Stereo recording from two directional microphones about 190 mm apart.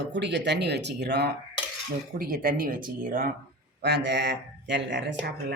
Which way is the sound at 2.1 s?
50° right (ahead or behind).